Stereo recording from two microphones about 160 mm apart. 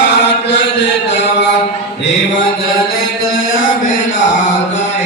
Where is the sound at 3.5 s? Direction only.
60° left (ahead or behind).